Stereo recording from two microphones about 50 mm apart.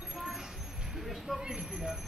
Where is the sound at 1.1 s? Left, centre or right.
Centre.